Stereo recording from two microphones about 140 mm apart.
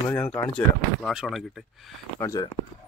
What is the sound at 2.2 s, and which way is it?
Speech, 25° left (ahead or behind).